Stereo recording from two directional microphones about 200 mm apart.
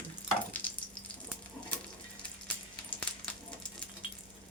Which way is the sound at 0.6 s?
5° left (ahead or behind).